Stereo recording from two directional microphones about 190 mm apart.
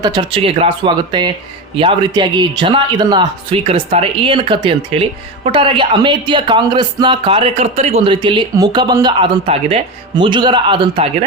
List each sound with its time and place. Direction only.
0.0 s a man's voice: 25° right (ahead or behind)